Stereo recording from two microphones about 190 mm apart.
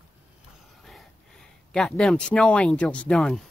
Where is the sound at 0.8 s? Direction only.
Centre (ahead or behind).